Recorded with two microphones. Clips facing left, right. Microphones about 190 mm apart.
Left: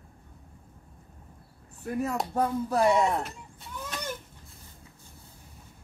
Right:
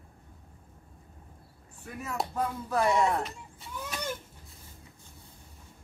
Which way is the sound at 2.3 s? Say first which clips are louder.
Left 4 dB; 35° left (ahead or behind).